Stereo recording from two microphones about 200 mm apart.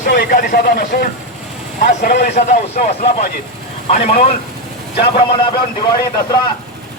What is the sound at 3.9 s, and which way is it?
Speech, 35° left (ahead or behind).